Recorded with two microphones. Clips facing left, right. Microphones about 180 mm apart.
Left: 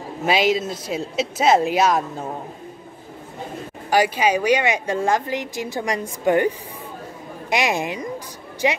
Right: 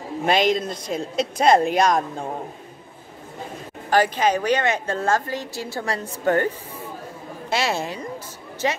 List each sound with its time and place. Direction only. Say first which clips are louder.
0.2 s speech: left 1 dB; 5° left (ahead or behind)
3.9 s a woman's voice: left 1 dB; 10° left (ahead or behind)